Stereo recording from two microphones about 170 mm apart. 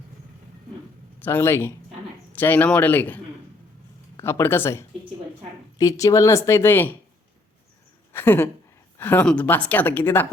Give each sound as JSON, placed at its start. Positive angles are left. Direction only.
{"t": 1.2, "sound": "a woman's voice", "side_deg": 15}
{"t": 4.2, "sound": "a woman's voice", "side_deg": 15}
{"t": 8.1, "sound": "a woman's voice", "side_deg": 10}